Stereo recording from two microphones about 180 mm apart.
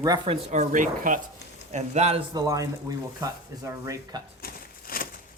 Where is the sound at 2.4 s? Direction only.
20° right (ahead or behind).